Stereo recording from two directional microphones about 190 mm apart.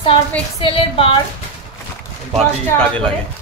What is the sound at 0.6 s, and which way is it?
Speech, 30° left (ahead or behind).